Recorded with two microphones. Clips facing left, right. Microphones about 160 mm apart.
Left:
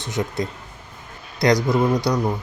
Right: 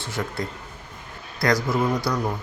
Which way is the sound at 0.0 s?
20° left (ahead or behind).